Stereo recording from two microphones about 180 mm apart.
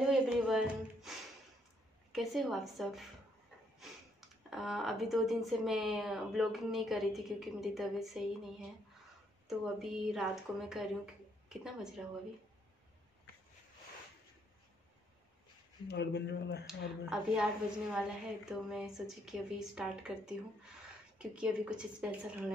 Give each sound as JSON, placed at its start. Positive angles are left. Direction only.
{"t": 0.0, "sound": "music", "side_deg": -5}
{"t": 2.1, "sound": "a woman's voice", "side_deg": 0}
{"t": 4.5, "sound": "a woman's voice", "side_deg": 0}
{"t": 15.9, "sound": "speech", "side_deg": 70}
{"t": 16.6, "sound": "a woman's voice", "side_deg": -5}